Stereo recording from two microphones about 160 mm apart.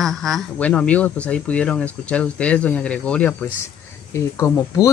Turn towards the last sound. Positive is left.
turn(degrees=20)  # may be behind; listen again after turning